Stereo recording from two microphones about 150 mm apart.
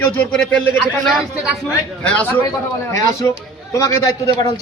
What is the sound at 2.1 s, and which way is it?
Speech, 15° left (ahead or behind).